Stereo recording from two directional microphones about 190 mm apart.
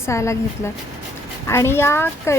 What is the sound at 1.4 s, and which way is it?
Speech, 15° left (ahead or behind).